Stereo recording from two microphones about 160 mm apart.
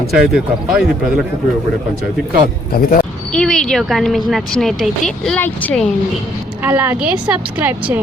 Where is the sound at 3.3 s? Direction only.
5° left (ahead or behind).